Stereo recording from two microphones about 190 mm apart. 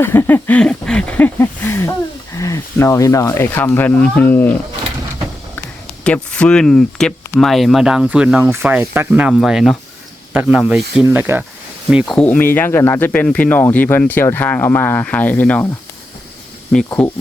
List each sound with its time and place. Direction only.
0.0 s speech: 10° left (ahead or behind)
6.1 s speech: 5° left (ahead or behind); by 11.4 s 10° right (ahead or behind)
11.9 s speech: centre (ahead or behind)
16.7 s speech: 5° left (ahead or behind)